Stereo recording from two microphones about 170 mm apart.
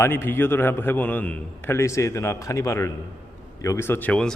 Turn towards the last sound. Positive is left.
turn(degrees=5)  # may be behind; listen again after turning